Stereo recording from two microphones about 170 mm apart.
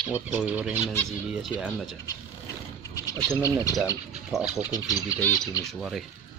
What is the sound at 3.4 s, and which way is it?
Speech, 20° left (ahead or behind).